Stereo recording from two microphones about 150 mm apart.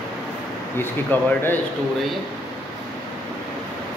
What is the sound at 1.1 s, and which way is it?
Speech, 10° left (ahead or behind).